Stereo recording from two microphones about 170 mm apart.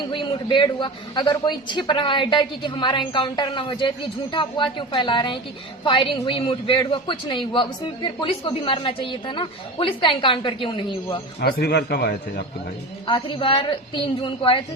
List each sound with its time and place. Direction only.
0.0 s a man's voice: 30° left (ahead or behind)
11.3 s a man's voice: 70° left (ahead or behind)
13.1 s a man's voice: 30° left (ahead or behind)